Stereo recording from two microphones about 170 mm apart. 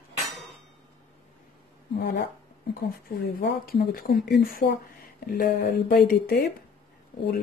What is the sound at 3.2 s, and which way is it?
Speech, 65° left (ahead or behind).